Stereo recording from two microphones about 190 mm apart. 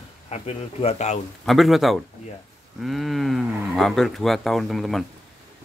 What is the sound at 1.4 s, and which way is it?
Speech, centre (ahead or behind).